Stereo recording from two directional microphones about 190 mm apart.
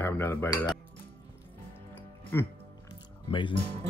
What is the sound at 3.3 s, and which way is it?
Speech, 25° left (ahead or behind).